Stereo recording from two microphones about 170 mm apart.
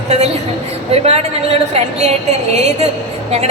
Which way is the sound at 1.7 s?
40° right (ahead or behind).